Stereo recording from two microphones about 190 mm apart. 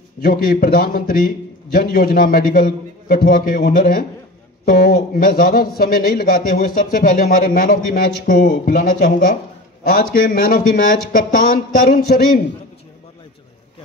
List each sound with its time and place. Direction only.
0.2 s speech: 50° left (ahead or behind)